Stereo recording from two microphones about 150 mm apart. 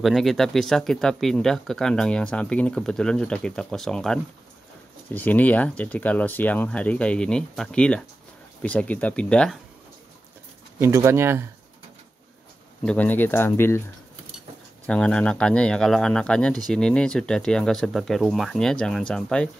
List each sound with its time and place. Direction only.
0.0 s speech: centre (ahead or behind)
10.8 s speech: 20° right (ahead or behind)
12.8 s speech: 10° left (ahead or behind)
14.9 s speech: 5° left (ahead or behind)